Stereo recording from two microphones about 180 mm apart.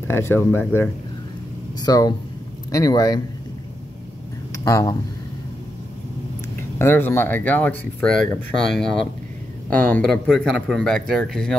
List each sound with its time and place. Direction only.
0.1 s speech: 15° left (ahead or behind)
1.8 s a man's voice: 20° left (ahead or behind)
4.6 s speech: 15° left (ahead or behind)
6.8 s speech: 10° left (ahead or behind)